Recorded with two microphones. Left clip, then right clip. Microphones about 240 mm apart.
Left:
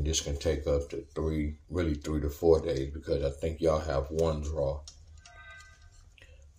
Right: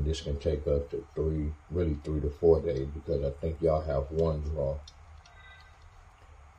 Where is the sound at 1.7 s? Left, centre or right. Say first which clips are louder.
Even; left.